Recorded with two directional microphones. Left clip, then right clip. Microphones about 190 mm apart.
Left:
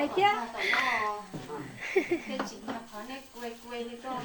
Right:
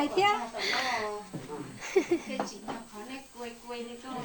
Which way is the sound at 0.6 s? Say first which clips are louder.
Left 3 dB; 25° right (ahead or behind).